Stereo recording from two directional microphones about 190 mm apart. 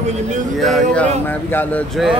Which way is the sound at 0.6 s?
5° left (ahead or behind).